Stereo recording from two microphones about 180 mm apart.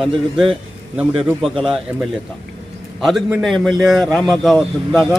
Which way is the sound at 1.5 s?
Centre (ahead or behind).